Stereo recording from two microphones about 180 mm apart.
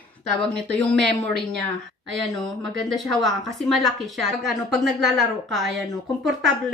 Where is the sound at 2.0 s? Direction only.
Centre (ahead or behind).